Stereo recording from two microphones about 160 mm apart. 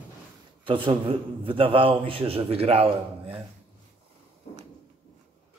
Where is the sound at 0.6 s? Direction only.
30° right (ahead or behind).